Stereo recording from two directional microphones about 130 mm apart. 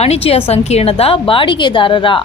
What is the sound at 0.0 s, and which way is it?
A woman's voice, 50° left (ahead or behind).